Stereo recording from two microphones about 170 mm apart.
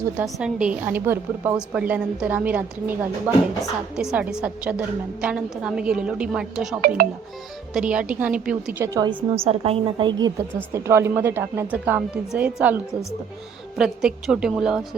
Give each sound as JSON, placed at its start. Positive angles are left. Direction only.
{"t": 0.3, "sound": "a woman's voice", "side_deg": -5}
{"t": 6.8, "sound": "speech", "side_deg": -60}
{"t": 7.7, "sound": "a woman's voice", "side_deg": -5}
{"t": 8.8, "sound": "a woman's voice", "side_deg": -20}
{"t": 9.4, "sound": "a woman's voice", "side_deg": -35}